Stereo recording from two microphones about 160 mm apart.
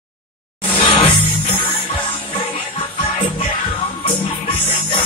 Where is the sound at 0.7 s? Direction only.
30° left (ahead or behind).